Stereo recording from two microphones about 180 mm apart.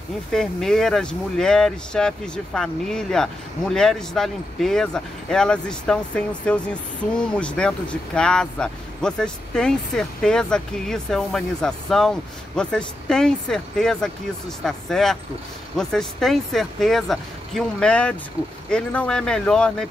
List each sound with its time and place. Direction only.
0.3 s speech: centre (ahead or behind)